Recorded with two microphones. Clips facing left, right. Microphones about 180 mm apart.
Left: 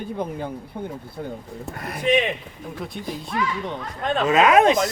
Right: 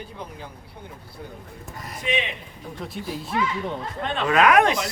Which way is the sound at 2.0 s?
40° left (ahead or behind).